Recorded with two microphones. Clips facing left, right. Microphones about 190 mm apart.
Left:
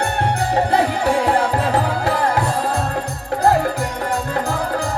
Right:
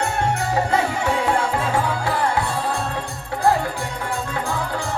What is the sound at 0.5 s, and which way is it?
Music, 35° left (ahead or behind).